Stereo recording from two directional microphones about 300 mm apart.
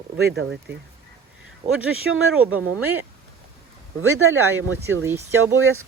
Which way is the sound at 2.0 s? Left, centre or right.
Right.